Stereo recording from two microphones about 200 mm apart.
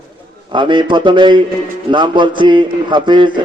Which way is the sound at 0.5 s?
25° right (ahead or behind).